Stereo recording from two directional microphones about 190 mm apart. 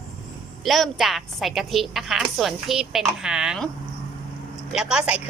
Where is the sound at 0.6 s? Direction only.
Centre (ahead or behind).